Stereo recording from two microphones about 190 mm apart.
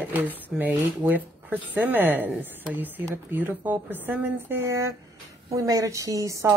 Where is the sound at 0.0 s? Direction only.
10° right (ahead or behind).